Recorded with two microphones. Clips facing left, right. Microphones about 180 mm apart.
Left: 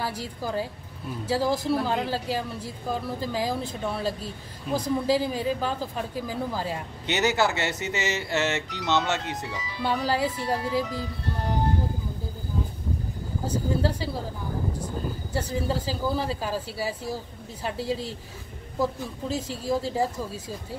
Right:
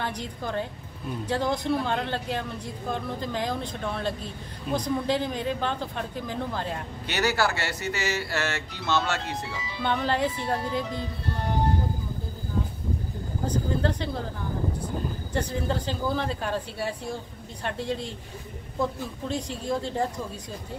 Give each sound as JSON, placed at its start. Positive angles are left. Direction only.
{"t": 0.0, "sound": "a woman's voice", "side_deg": 5}
{"t": 7.1, "sound": "speech", "side_deg": 20}
{"t": 9.8, "sound": "speech", "side_deg": 5}
{"t": 13.5, "sound": "a sound", "side_deg": 5}
{"t": 15.3, "sound": "speech", "side_deg": 5}
{"t": 19.2, "sound": "speech", "side_deg": 5}